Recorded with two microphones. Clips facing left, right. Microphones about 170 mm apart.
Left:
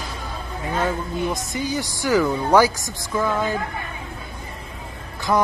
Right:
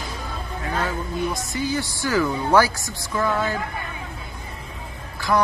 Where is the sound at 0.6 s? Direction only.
20° left (ahead or behind).